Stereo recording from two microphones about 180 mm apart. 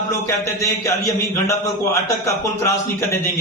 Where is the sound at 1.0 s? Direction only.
15° left (ahead or behind).